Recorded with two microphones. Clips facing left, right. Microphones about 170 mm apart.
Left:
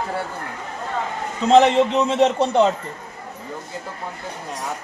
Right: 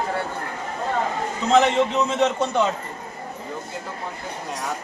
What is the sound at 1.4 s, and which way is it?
A man's voice, 30° left (ahead or behind).